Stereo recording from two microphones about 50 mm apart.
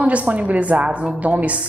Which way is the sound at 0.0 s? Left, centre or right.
Right.